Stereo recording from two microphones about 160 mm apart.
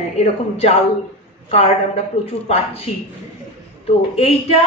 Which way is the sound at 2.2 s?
35° left (ahead or behind).